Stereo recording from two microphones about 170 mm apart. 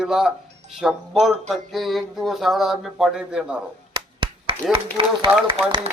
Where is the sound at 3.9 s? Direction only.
30° right (ahead or behind).